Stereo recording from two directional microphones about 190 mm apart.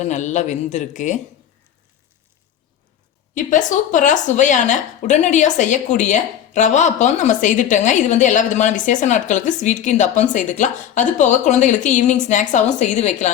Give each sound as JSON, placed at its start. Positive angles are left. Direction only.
{"t": 0.0, "sound": "a woman's voice", "side_deg": 40}
{"t": 3.3, "sound": "a woman's voice", "side_deg": 40}